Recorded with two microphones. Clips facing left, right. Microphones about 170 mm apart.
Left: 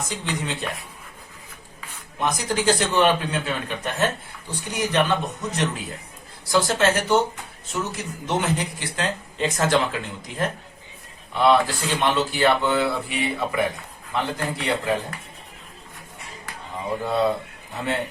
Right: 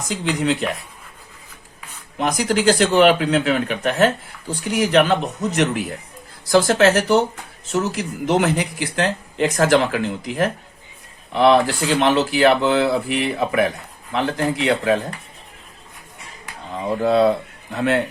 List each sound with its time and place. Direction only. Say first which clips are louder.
0.1 s speech: right 8 dB; 90° right
2.4 s speech: right 7 dB; 85° right; by 13.7 s 65° right (ahead or behind)
14.1 s speech: right 5 dB; 75° right (ahead or behind)
17.0 s speech: right 7 dB; 70° right (ahead or behind)